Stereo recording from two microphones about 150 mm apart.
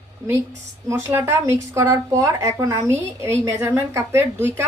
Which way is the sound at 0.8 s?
15° right (ahead or behind).